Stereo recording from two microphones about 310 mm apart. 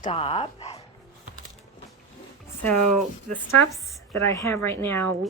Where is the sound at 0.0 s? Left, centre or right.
Centre.